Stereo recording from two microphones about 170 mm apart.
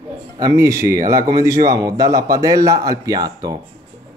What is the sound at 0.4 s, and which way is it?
Speech, 20° right (ahead or behind).